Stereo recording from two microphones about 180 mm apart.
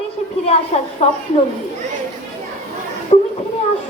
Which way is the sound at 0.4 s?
35° left (ahead or behind).